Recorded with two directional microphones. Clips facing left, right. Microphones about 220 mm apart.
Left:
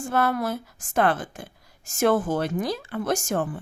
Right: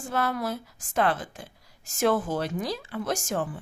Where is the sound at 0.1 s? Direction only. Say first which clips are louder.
Left 4 dB; 55° left (ahead or behind).